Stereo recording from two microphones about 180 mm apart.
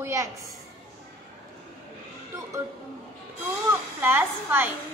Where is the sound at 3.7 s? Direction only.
10° right (ahead or behind).